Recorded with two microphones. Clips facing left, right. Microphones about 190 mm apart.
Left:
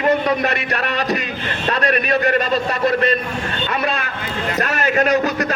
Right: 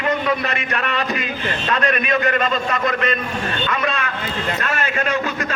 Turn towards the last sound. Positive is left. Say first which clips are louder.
# left 5 dB
turn(degrees=40)  # may be behind; listen again after turning